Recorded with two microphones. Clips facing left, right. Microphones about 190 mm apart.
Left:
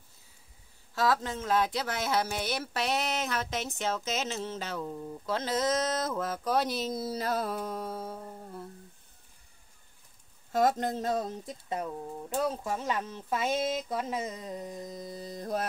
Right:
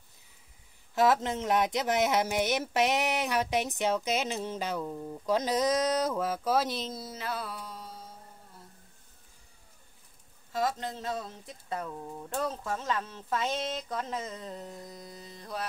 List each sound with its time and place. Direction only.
0.9 s speech: 20° right (ahead or behind); by 6.9 s centre (ahead or behind)
7.1 s humming: 40° left (ahead or behind); by 8.6 s 60° left (ahead or behind)
10.5 s speech: 50° left (ahead or behind)
11.4 s speech: 20° left (ahead or behind)
15.1 s mantra: 40° left (ahead or behind)